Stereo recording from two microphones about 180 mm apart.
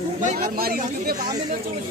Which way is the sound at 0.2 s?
50° right (ahead or behind).